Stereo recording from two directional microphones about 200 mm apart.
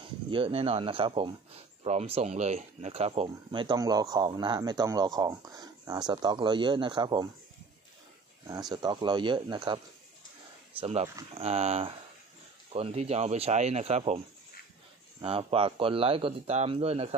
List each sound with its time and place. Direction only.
0.0 s speech: 25° right (ahead or behind)
8.5 s speech: 20° right (ahead or behind)
10.8 s speech: 30° right (ahead or behind)
15.2 s speech: 30° right (ahead or behind)